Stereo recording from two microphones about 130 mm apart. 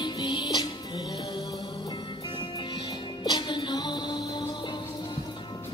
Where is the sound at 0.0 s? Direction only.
35° left (ahead or behind).